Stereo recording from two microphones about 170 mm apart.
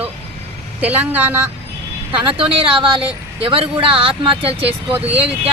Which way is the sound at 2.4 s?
30° right (ahead or behind).